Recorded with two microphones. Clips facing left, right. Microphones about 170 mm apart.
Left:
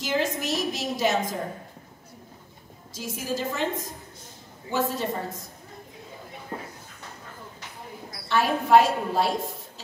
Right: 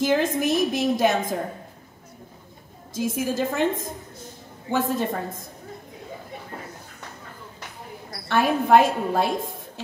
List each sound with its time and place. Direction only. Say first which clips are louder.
0.0 s a woman's voice: right 6 dB; 55° right (ahead or behind)
2.9 s a woman's voice: right 6 dB; 50° right (ahead or behind)
8.3 s a woman's voice: right 2 dB; 50° right (ahead or behind)